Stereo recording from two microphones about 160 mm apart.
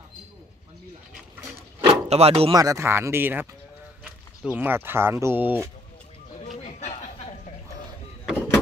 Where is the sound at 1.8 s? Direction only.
40° right (ahead or behind).